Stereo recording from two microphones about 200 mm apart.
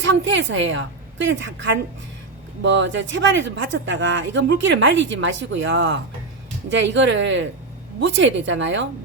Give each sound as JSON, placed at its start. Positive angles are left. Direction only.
{"t": 0.0, "sound": "a woman's voice", "side_deg": -65}